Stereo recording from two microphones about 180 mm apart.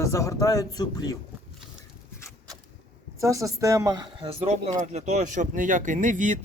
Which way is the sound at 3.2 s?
20° right (ahead or behind).